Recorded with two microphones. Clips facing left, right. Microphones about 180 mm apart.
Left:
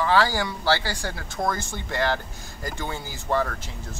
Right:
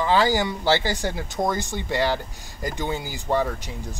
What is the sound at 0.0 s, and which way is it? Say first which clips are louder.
Speech: right 2 dB; 15° right (ahead or behind).